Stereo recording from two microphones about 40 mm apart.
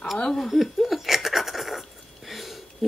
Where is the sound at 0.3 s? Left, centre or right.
Centre.